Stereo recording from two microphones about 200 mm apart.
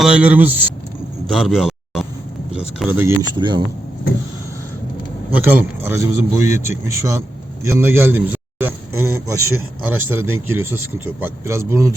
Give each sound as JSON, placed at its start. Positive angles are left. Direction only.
{"t": 0.0, "sound": "a man's voice", "side_deg": -5}
{"t": 1.3, "sound": "a sound", "side_deg": 0}
{"t": 2.7, "sound": "a man's voice", "side_deg": -10}
{"t": 3.3, "sound": "speech", "side_deg": -25}
{"t": 5.3, "sound": "a man's voice", "side_deg": -10}